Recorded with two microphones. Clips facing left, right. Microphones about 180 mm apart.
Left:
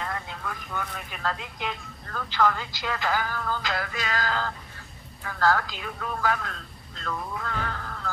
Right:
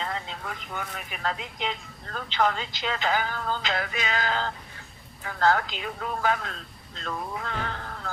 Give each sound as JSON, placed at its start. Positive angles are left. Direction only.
{"t": 0.0, "sound": "speech", "side_deg": -25}